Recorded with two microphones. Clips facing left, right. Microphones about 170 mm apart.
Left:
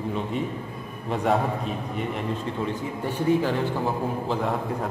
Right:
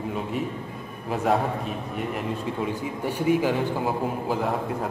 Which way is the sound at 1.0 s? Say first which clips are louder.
Even; 5° right (ahead or behind).